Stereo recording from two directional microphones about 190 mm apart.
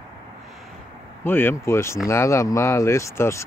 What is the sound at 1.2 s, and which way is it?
Speech, 10° left (ahead or behind).